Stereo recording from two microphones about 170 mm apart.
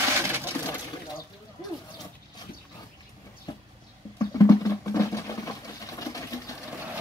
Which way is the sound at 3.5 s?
25° left (ahead or behind).